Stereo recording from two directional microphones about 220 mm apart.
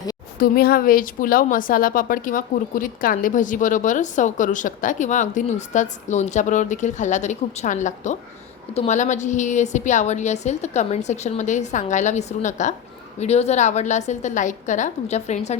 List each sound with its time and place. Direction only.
0.3 s a woman's voice: 45° left (ahead or behind)